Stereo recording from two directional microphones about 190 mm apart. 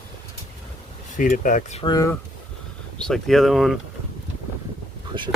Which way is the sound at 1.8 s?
20° left (ahead or behind).